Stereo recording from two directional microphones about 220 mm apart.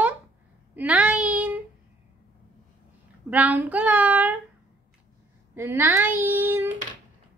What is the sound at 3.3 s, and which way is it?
Speech, 5° right (ahead or behind).